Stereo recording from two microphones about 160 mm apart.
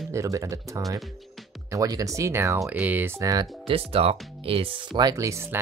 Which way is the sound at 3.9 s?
35° right (ahead or behind).